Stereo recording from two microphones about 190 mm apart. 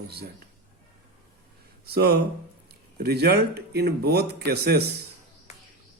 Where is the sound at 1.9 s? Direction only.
60° right (ahead or behind).